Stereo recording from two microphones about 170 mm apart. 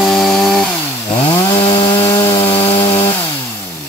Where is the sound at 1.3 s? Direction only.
20° left (ahead or behind).